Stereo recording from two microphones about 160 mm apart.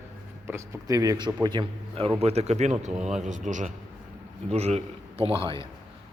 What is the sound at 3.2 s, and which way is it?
A man's voice, 50° right (ahead or behind).